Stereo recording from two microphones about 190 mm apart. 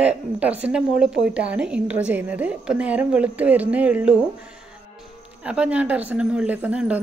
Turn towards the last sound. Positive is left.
turn(degrees=-5)  # may be behind; listen again after turning